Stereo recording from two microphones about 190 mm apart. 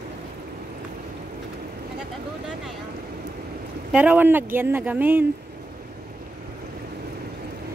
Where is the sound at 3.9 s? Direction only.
10° right (ahead or behind).